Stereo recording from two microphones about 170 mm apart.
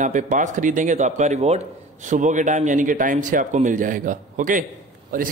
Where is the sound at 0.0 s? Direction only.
50° right (ahead or behind).